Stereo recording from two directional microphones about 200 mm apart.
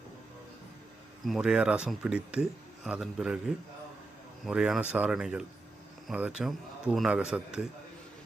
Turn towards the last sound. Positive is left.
turn(degrees=-5)  # may be behind; listen again after turning